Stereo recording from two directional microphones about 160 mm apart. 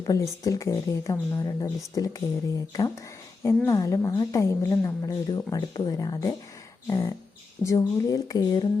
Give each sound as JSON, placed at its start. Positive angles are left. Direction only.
{"t": 0.0, "sound": "a woman's voice", "side_deg": 20}
{"t": 3.4, "sound": "a woman's voice", "side_deg": 20}
{"t": 6.8, "sound": "beatboxing", "side_deg": 15}
{"t": 7.6, "sound": "a woman's voice", "side_deg": 20}